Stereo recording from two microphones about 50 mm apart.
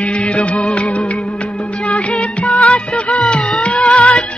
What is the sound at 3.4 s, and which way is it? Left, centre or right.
Music, left.